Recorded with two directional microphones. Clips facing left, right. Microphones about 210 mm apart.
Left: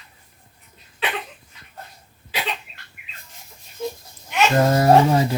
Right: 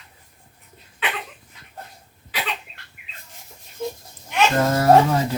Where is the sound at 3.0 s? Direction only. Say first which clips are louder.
Left 1 dB; 35° right (ahead or behind).